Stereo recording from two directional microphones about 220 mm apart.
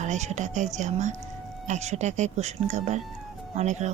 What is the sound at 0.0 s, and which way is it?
Speech, 30° right (ahead or behind).